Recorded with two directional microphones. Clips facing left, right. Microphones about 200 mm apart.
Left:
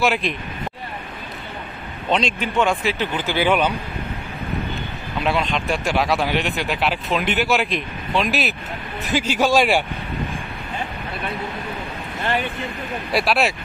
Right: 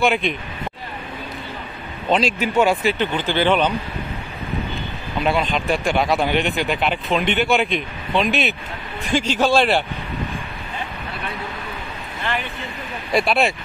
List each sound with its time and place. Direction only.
0.0 s speech: centre (ahead or behind)
2.0 s speech: 5° right (ahead or behind)
5.2 s a man's voice: centre (ahead or behind)
13.1 s speech: centre (ahead or behind)